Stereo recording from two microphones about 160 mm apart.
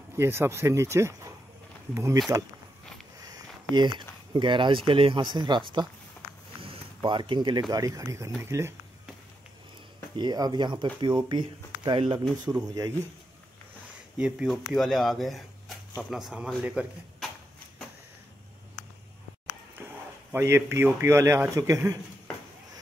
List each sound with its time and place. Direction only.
0.2 s a man's voice: 15° right (ahead or behind)
2.3 s speech: 20° right (ahead or behind)
3.7 s speech: 30° right (ahead or behind)
7.0 s a man's voice: 30° right (ahead or behind)
10.1 s speech: 25° right (ahead or behind)
14.1 s speech: 5° right (ahead or behind)
20.3 s a man's voice: 15° right (ahead or behind)